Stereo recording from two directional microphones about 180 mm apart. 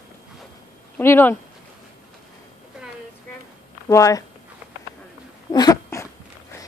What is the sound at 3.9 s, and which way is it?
Speech, 20° left (ahead or behind).